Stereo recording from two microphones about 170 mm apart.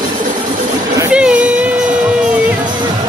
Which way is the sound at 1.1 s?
5° right (ahead or behind).